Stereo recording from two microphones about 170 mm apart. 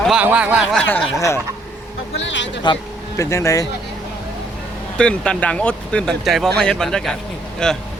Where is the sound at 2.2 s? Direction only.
90° left.